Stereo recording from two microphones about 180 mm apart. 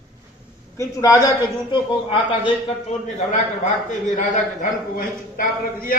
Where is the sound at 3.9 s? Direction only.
45° left (ahead or behind).